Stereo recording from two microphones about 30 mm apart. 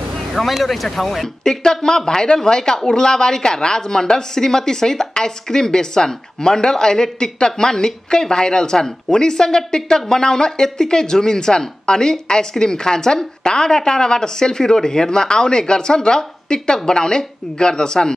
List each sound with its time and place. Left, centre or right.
0.5 s speech: centre
1.4 s speech: left